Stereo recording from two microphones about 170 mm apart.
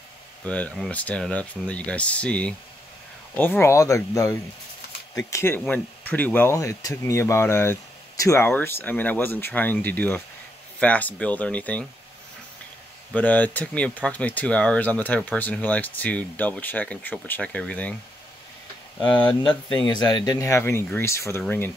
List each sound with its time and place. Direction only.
0.5 s speech: 10° left (ahead or behind)
13.1 s speech: 10° left (ahead or behind)
18.9 s speech: 10° left (ahead or behind)
19.4 s speech: 25° left (ahead or behind); by 21.7 s 10° left (ahead or behind)